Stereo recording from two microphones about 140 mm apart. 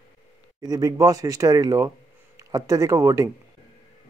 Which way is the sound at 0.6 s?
25° right (ahead or behind).